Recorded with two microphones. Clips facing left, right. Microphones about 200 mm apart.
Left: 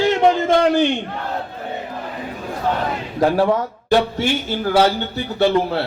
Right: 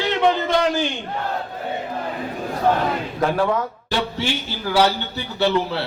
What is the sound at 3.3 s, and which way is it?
Speech, 30° left (ahead or behind).